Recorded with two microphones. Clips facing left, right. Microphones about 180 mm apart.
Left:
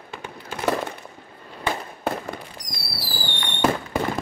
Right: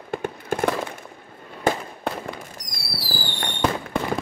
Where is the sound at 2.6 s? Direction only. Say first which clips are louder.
Right 1 dB; centre (ahead or behind).